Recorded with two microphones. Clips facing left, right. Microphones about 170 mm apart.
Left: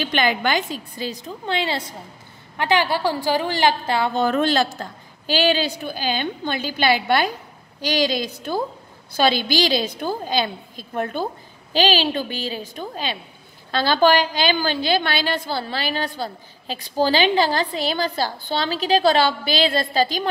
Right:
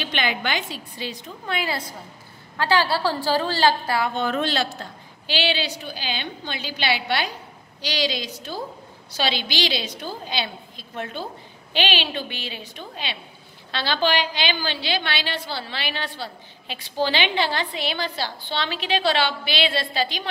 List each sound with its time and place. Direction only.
0.0 s a woman's voice: 45° left (ahead or behind)
1.4 s a woman's voice: 30° left (ahead or behind)
4.1 s a woman's voice: 40° left (ahead or behind)